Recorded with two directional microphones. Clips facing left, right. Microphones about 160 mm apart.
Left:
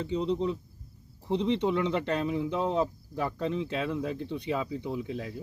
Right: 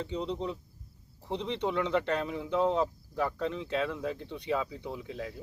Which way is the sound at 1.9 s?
15° left (ahead or behind).